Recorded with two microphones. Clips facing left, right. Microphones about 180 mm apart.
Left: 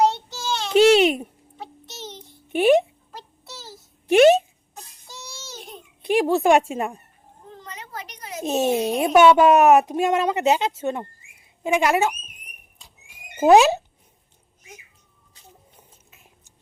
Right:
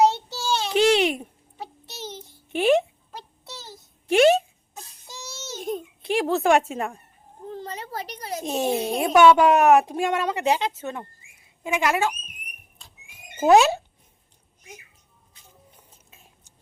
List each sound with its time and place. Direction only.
0.0 s child singing: 10° right (ahead or behind)
0.9 s babbling: 25° left (ahead or behind)
1.5 s child singing: 5° right (ahead or behind)
2.6 s a sound: 20° left (ahead or behind)
3.1 s child singing: centre (ahead or behind)
5.0 s child singing: centre (ahead or behind)
5.5 s a sound: 45° right (ahead or behind)
6.0 s speech: 15° left (ahead or behind)
7.5 s a sound: 35° right (ahead or behind)
8.4 s a woman's voice: 25° left (ahead or behind)
12.8 s horse: 15° left (ahead or behind)